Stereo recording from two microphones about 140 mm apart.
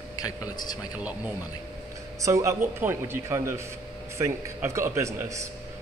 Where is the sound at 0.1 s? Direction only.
30° left (ahead or behind).